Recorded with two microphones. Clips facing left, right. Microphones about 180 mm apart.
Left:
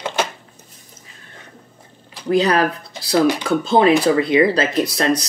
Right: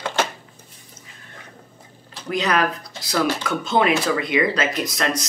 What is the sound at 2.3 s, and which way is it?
Speech, 30° left (ahead or behind).